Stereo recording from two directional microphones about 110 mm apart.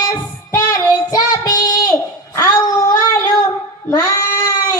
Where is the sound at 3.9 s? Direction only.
35° left (ahead or behind).